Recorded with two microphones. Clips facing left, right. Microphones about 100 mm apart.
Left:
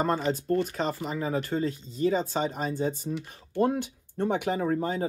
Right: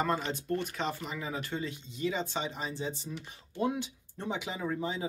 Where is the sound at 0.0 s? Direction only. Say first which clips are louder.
Left 5 dB; 40° left (ahead or behind).